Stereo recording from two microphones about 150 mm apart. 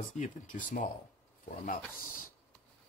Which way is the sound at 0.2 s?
60° left (ahead or behind).